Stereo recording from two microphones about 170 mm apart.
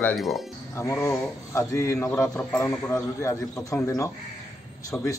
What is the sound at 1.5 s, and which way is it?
A man's voice, 20° left (ahead or behind).